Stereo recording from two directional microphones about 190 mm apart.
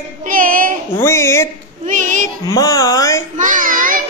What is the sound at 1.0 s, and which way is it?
Speech, 15° left (ahead or behind).